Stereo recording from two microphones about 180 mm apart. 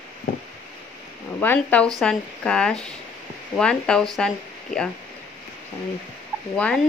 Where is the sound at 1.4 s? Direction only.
10° left (ahead or behind).